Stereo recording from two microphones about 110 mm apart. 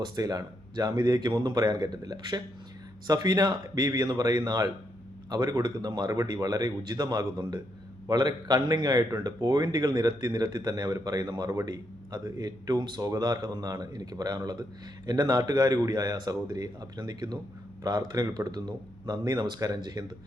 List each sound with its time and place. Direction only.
0.0 s a man's voice: 35° right (ahead or behind)